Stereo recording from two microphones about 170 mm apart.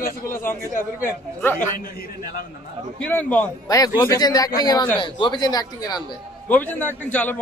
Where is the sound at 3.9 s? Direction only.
20° left (ahead or behind).